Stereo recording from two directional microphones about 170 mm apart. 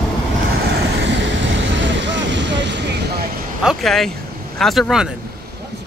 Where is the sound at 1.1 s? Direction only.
90° right.